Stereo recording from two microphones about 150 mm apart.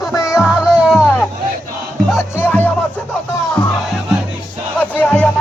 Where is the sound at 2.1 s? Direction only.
15° left (ahead or behind).